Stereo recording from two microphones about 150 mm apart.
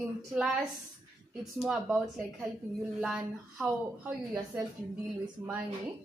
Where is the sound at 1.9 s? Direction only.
10° right (ahead or behind).